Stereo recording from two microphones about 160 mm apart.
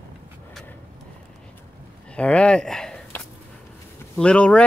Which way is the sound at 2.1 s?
5° left (ahead or behind).